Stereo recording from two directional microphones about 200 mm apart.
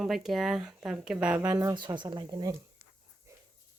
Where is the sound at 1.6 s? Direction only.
20° right (ahead or behind).